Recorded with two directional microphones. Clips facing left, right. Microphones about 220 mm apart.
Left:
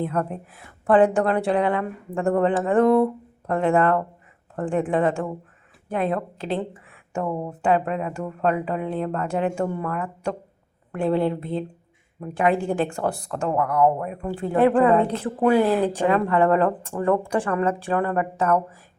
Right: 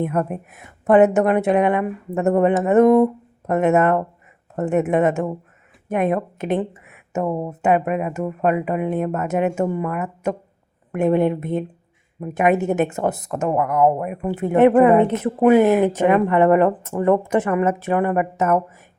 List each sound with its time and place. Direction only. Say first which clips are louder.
0.0 s a woman's voice: right 3 dB; 15° right (ahead or behind)